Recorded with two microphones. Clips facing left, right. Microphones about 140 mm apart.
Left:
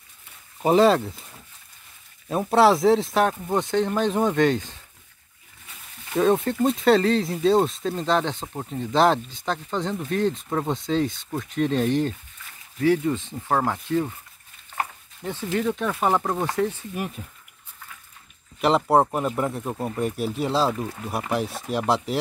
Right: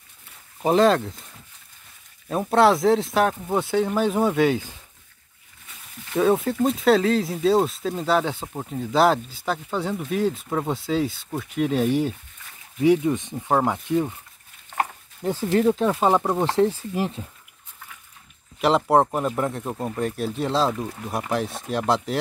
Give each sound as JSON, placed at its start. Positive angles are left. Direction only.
{"t": 0.6, "sound": "speech", "side_deg": 0}
{"t": 6.1, "sound": "speech", "side_deg": 0}
{"t": 12.8, "sound": "speech", "side_deg": -20}
{"t": 15.2, "sound": "speech", "side_deg": -30}
{"t": 15.9, "sound": "speech", "side_deg": -20}
{"t": 16.5, "sound": "speech", "side_deg": -30}
{"t": 18.6, "sound": "speech", "side_deg": 0}